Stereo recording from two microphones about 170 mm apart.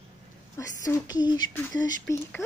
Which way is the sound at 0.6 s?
20° left (ahead or behind).